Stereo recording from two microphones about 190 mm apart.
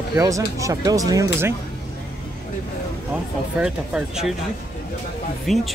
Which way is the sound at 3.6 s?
5° right (ahead or behind).